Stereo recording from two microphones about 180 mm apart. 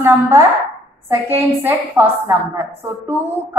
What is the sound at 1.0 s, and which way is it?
A woman's voice, 10° right (ahead or behind).